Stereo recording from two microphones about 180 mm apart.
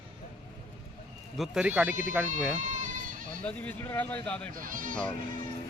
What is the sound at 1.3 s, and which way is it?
Speech, centre (ahead or behind).